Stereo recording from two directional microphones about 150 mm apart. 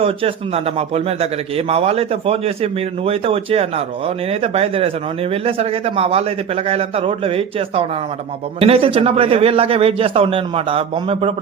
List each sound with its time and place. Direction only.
0.0 s a man's voice: 40° right (ahead or behind)